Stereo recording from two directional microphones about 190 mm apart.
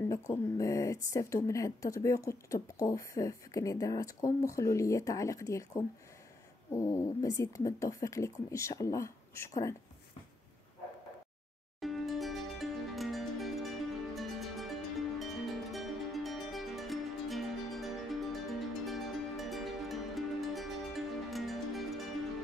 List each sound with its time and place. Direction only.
0.1 s speech: 15° left (ahead or behind)
11.8 s music: centre (ahead or behind)